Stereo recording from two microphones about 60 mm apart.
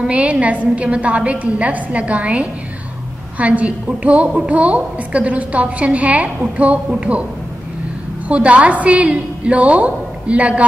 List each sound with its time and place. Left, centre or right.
0.1 s a woman's voice: right
8.3 s a woman's voice: right